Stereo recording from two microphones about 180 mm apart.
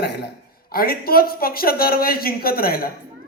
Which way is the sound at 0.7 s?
55° left (ahead or behind).